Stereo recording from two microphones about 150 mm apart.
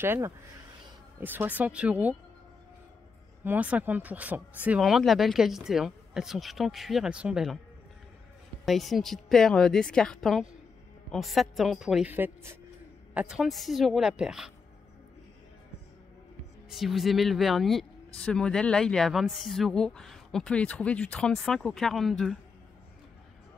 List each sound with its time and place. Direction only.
0.0 s speech: 15° right (ahead or behind)
3.4 s speech: 10° right (ahead or behind)
8.6 s speech: centre (ahead or behind)
16.6 s speech: centre (ahead or behind)